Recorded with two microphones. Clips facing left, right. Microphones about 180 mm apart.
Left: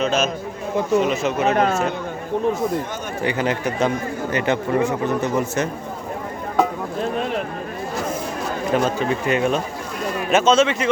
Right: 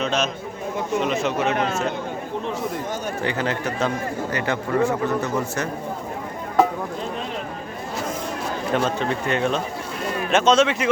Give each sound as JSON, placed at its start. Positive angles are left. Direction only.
{"t": 0.0, "sound": "a man's voice", "side_deg": 5}
{"t": 1.5, "sound": "speech", "side_deg": 45}
{"t": 3.2, "sound": "speech", "side_deg": 15}
{"t": 8.7, "sound": "speech", "side_deg": 5}